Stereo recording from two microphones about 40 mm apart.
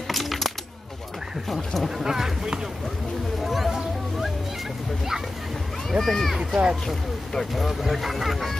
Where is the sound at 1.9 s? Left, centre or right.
Centre.